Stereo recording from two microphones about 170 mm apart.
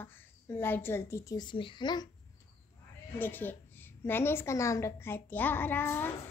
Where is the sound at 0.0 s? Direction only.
10° left (ahead or behind).